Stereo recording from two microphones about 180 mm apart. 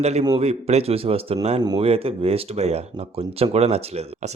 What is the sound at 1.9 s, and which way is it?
Speech, 35° right (ahead or behind).